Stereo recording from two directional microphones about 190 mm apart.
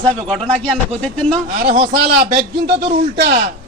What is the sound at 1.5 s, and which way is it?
Speech, 55° right (ahead or behind).